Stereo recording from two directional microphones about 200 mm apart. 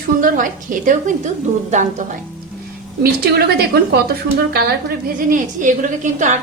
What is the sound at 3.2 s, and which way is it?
Speech, 50° right (ahead or behind).